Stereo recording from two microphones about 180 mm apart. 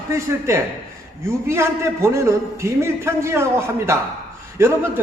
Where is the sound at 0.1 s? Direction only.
15° right (ahead or behind).